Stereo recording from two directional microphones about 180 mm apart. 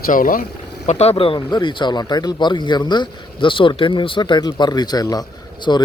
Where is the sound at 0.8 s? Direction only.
35° left (ahead or behind).